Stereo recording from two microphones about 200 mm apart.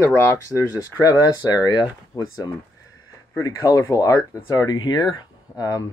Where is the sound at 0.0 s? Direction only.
10° left (ahead or behind).